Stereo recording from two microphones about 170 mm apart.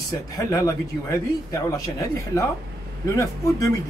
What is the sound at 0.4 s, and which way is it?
Speech, 20° left (ahead or behind).